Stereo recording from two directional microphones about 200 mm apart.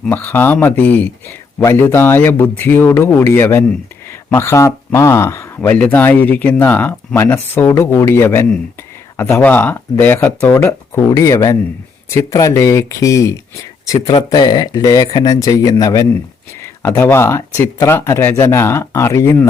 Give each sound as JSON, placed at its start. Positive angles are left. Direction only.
{"t": 0.0, "sound": "speech", "side_deg": 10}